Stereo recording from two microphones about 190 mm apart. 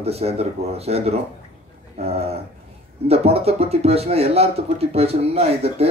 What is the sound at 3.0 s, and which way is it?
Speech, 30° right (ahead or behind).